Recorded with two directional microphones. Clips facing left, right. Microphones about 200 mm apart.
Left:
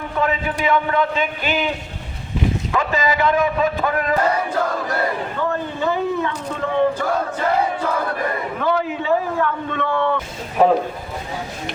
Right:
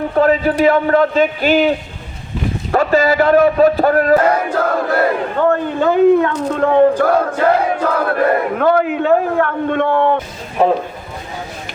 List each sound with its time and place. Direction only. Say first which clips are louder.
0.2 s a man's voice: right 9 dB; 40° right (ahead or behind)
2.7 s a man's voice: right 9 dB; 50° right (ahead or behind)
4.3 s speech: right 5 dB; 60° right (ahead or behind)